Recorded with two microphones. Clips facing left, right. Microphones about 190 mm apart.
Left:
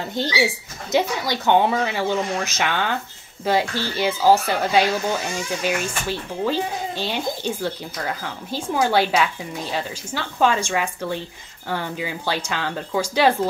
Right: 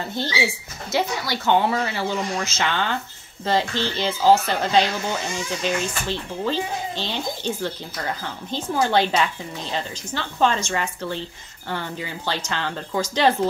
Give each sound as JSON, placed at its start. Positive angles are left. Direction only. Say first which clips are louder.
{"t": 0.1, "sound": "speech", "louder": "left 5 dB", "side_deg": 15}